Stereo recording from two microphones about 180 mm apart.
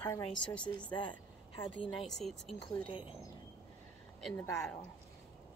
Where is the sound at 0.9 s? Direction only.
25° left (ahead or behind).